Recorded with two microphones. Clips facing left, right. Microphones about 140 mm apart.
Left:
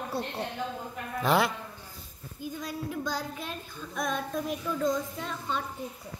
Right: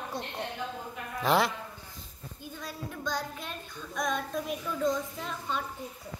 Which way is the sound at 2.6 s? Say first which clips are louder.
Left 5 dB; 10° left (ahead or behind).